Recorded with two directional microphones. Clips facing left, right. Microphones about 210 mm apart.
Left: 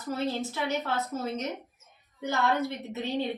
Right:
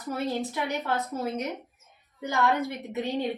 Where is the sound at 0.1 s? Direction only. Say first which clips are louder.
Right 1 dB; 15° right (ahead or behind).